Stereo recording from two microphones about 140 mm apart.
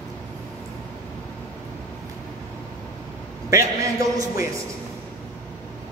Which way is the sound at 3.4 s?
25° right (ahead or behind).